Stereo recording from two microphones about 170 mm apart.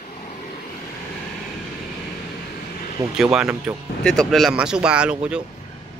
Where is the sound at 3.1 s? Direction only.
5° right (ahead or behind).